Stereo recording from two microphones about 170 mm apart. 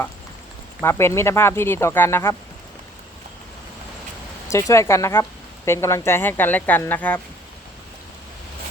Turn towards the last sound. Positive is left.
turn(degrees=10)  # may be behind; listen again after turning